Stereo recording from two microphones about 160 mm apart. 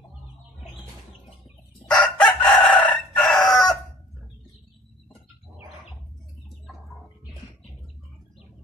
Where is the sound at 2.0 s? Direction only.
10° left (ahead or behind).